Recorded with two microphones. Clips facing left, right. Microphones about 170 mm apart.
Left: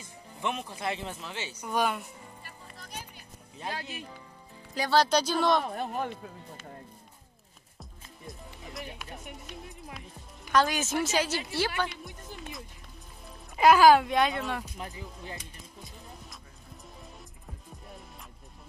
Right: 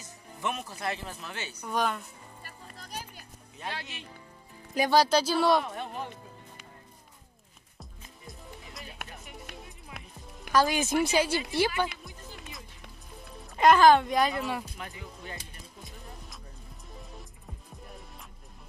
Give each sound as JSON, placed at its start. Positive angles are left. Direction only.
{"t": 0.4, "sound": "speech", "side_deg": 20}
{"t": 1.6, "sound": "speech", "side_deg": 5}
{"t": 3.5, "sound": "speech", "side_deg": 35}
{"t": 4.7, "sound": "a woman's voice", "side_deg": -15}
{"t": 5.8, "sound": "a man's voice", "side_deg": 50}
{"t": 7.8, "sound": "music", "side_deg": 0}
{"t": 9.5, "sound": "music", "side_deg": -60}
{"t": 10.5, "sound": "a woman's voice", "side_deg": -10}
{"t": 12.0, "sound": "music", "side_deg": 0}
{"t": 13.6, "sound": "speech", "side_deg": 5}